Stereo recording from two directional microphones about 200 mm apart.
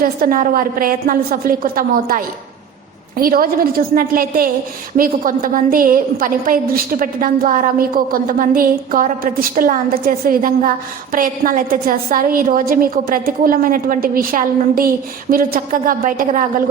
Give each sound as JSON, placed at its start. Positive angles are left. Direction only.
{"t": 0.0, "sound": "a woman's voice", "side_deg": -45}